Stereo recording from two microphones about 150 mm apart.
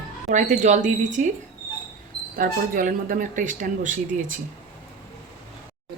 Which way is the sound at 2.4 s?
65° right (ahead or behind).